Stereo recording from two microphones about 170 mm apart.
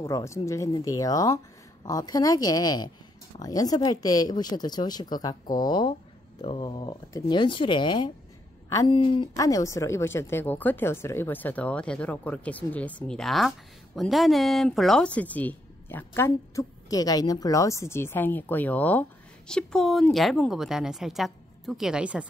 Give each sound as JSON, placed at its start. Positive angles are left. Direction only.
{"t": 0.0, "sound": "speech", "side_deg": 15}
{"t": 9.4, "sound": "a woman's voice", "side_deg": 20}